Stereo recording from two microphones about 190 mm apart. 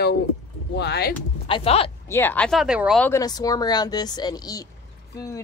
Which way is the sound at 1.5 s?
30° left (ahead or behind).